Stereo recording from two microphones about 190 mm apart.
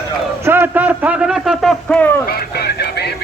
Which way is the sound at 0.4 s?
10° right (ahead or behind).